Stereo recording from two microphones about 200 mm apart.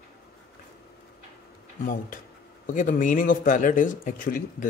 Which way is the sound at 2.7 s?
40° left (ahead or behind).